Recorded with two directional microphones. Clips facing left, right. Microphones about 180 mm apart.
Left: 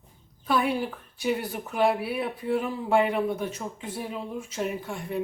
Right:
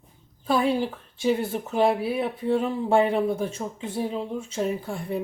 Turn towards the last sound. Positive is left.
turn(degrees=-35)  # may be behind; listen again after turning